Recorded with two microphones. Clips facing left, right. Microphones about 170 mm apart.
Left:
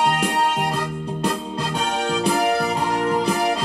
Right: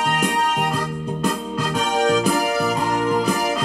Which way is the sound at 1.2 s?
30° left (ahead or behind).